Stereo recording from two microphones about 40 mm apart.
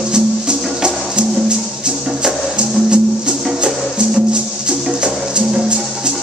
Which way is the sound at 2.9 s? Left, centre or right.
Right.